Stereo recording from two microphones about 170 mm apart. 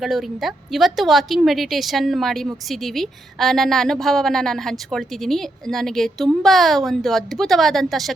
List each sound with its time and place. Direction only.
0.0 s a woman's voice: centre (ahead or behind)